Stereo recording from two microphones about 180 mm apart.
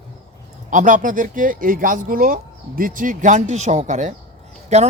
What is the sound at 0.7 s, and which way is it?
Speech, 45° right (ahead or behind).